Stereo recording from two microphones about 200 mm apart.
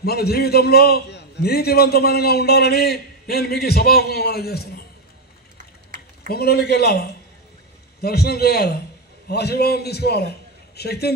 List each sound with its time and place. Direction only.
0.0 s a man's voice: 50° left (ahead or behind)
5.9 s a man's voice: 50° left (ahead or behind)